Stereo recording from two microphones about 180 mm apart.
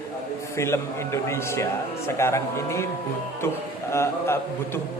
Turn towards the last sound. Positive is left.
turn(degrees=15)  # may be behind; listen again after turning